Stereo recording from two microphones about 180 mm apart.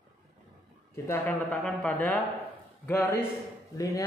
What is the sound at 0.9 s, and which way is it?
Speech, 10° left (ahead or behind).